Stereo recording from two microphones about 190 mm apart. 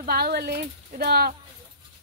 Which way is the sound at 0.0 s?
55° right (ahead or behind).